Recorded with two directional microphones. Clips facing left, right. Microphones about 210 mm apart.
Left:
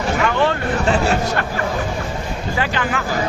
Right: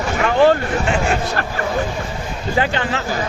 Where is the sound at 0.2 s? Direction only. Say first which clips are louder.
Right 7 dB; 35° right (ahead or behind).